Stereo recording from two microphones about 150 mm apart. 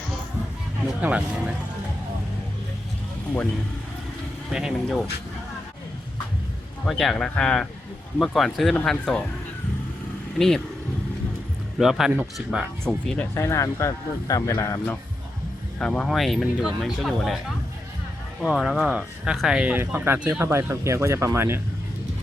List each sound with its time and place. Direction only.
1.0 s speech: 10° right (ahead or behind)
4.5 s speech: 5° right (ahead or behind)
6.8 s speech: centre (ahead or behind)
10.3 s speech: centre (ahead or behind)
11.8 s speech: centre (ahead or behind)
13.3 s speech: 20° left (ahead or behind)
15.8 s speech: 5° left (ahead or behind)
18.4 s speech: 5° right (ahead or behind)